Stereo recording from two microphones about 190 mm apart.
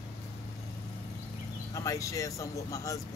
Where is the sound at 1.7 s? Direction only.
15° left (ahead or behind).